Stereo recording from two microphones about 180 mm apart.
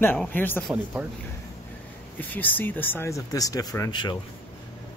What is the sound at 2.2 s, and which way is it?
Speech, 10° left (ahead or behind).